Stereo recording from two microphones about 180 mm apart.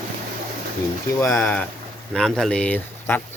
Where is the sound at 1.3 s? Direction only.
10° left (ahead or behind).